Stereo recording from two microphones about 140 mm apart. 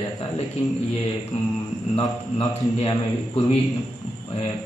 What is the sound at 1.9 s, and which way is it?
Speech, 30° left (ahead or behind).